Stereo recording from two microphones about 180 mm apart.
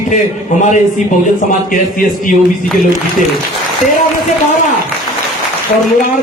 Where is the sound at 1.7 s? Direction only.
50° left (ahead or behind).